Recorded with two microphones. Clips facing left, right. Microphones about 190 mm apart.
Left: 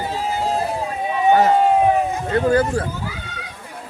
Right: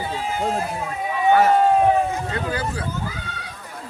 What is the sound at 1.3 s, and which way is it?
Speech, 15° left (ahead or behind).